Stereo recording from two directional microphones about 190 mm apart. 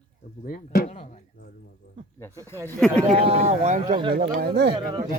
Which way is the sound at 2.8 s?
5° left (ahead or behind).